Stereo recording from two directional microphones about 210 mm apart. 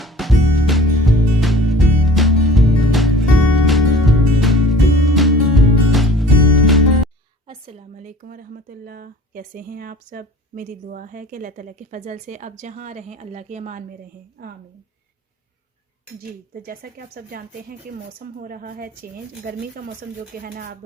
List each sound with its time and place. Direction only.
0.0 s music: centre (ahead or behind)
7.4 s speech: 30° right (ahead or behind); by 14.5 s 45° right (ahead or behind)
16.6 s speech: 45° right (ahead or behind)